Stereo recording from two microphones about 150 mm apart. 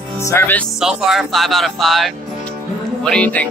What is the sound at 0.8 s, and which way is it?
Speech, 5° right (ahead or behind).